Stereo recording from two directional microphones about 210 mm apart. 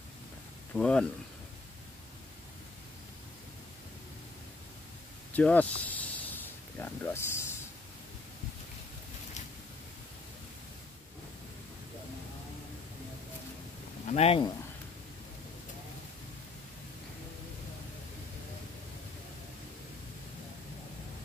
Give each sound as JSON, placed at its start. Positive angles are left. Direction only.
{"t": 0.7, "sound": "speech", "side_deg": 5}
{"t": 5.3, "sound": "snake", "side_deg": 5}
{"t": 14.0, "sound": "speech", "side_deg": 30}